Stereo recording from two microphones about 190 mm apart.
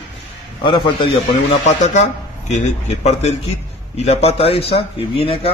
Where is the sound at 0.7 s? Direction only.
25° left (ahead or behind).